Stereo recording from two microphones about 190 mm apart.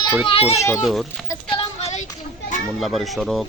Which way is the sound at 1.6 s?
35° left (ahead or behind).